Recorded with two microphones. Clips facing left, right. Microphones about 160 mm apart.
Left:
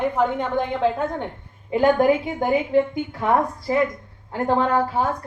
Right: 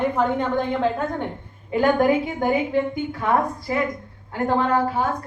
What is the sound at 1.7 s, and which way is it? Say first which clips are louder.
Speech: left 1 dB; 20° left (ahead or behind).